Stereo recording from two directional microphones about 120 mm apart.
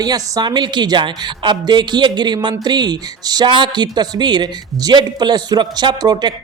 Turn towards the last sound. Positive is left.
turn(degrees=-35)  # may be behind; listen again after turning